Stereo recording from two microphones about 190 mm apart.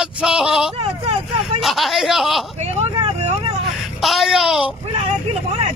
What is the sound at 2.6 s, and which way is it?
Vehicle, 35° right (ahead or behind).